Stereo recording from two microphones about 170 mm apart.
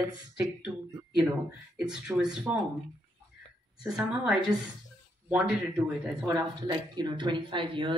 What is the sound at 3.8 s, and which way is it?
Speech, 5° right (ahead or behind).